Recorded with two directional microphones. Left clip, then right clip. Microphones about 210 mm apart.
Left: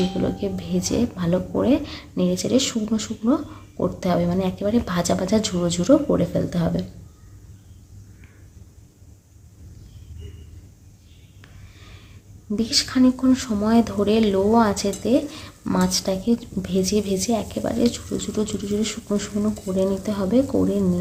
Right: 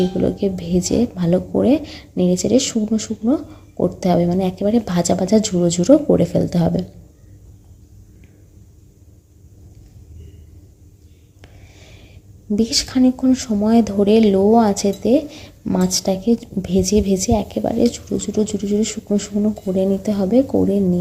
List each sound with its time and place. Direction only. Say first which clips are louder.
0.2 s speech: right 6 dB; 25° right (ahead or behind)
12.5 s speech: right 3 dB; 25° right (ahead or behind)